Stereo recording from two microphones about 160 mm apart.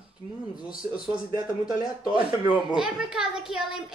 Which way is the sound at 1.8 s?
30° left (ahead or behind).